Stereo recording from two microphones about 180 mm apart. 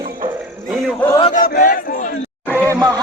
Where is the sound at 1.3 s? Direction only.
50° left (ahead or behind).